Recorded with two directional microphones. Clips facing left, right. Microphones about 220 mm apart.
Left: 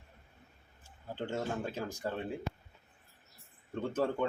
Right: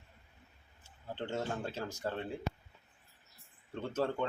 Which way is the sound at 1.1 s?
10° left (ahead or behind).